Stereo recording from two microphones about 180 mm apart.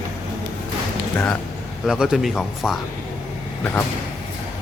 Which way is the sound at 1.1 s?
15° left (ahead or behind).